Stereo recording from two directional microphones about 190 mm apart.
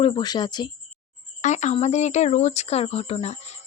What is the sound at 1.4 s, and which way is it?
Speech, 40° left (ahead or behind).